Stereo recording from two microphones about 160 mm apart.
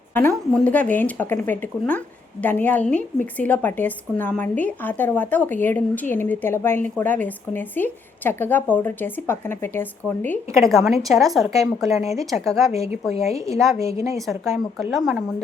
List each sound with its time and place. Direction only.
0.1 s a woman's voice: 10° left (ahead or behind)
10.6 s a woman's voice: centre (ahead or behind)
13.7 s a woman's voice: 20° right (ahead or behind)
14.8 s a woman's voice: centre (ahead or behind)